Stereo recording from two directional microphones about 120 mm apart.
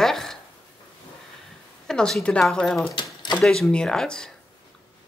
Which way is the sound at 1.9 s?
5° left (ahead or behind).